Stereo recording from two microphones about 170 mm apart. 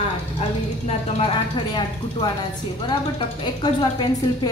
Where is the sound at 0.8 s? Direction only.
35° left (ahead or behind).